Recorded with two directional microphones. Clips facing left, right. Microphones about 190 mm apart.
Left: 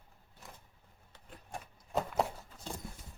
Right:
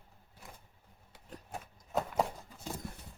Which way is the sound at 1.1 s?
5° right (ahead or behind).